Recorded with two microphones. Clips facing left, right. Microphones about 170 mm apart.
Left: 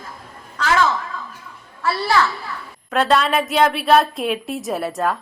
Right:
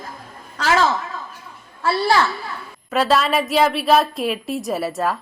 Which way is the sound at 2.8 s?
Centre (ahead or behind).